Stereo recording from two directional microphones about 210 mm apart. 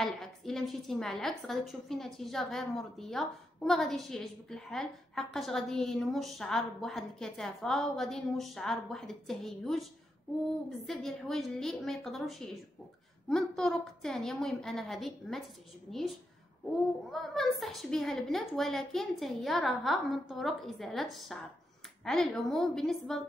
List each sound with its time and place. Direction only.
0.0 s a woman's voice: centre (ahead or behind)
10.9 s a woman's voice: centre (ahead or behind)
17.1 s a woman's voice: centre (ahead or behind)